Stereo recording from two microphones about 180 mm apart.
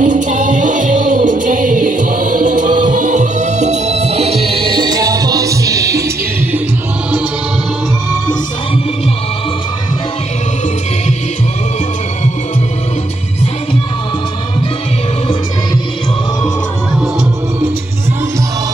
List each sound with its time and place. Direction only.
0.0 s music: 45° right (ahead or behind); by 6.0 s 20° right (ahead or behind)